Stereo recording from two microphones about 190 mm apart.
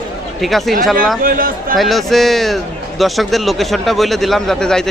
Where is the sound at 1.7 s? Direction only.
Centre (ahead or behind).